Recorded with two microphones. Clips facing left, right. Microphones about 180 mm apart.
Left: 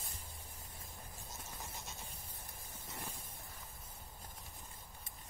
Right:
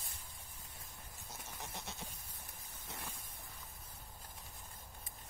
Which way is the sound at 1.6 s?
70° right (ahead or behind).